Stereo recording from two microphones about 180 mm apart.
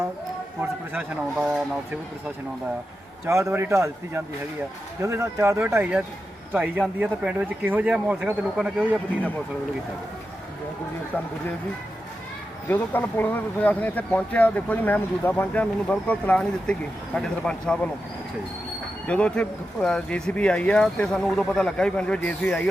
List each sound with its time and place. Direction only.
0.6 s speech: 10° right (ahead or behind)
3.2 s speech: 15° right (ahead or behind)
12.6 s speech: 10° left (ahead or behind)
19.0 s speech: 5° left (ahead or behind)